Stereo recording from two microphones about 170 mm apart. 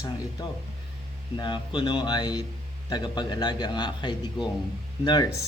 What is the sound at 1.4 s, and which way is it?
Speech, 25° left (ahead or behind).